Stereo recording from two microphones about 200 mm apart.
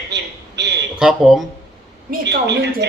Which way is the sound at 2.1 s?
55° right (ahead or behind).